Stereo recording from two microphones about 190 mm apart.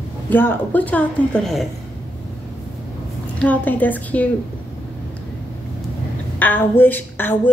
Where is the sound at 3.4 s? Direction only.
10° left (ahead or behind).